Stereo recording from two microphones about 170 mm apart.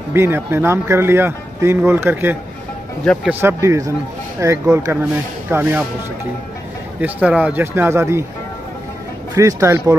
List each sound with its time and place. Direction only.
0.1 s speech: 15° right (ahead or behind)
7.0 s speech: 10° right (ahead or behind)
9.3 s speech: 20° right (ahead or behind)